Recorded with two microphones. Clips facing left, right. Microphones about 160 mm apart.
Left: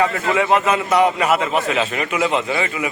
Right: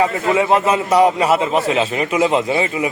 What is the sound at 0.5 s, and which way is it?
A man's voice, 35° right (ahead or behind).